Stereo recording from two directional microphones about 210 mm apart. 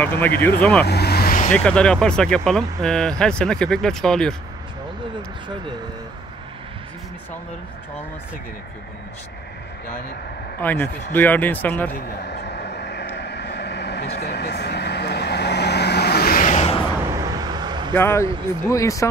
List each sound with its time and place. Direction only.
0.0 s speech: 10° left (ahead or behind)
0.8 s vehicle: 50° left (ahead or behind)
1.5 s speech: 5° left (ahead or behind)
10.6 s speech: 10° left (ahead or behind)
11.9 s vehicle: 55° left (ahead or behind); by 16.8 s 30° left (ahead or behind)
17.1 s vehicle: 20° right (ahead or behind)
17.9 s speech: 10° left (ahead or behind)